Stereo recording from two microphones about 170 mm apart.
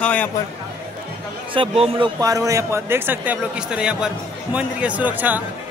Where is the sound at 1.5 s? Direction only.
35° right (ahead or behind).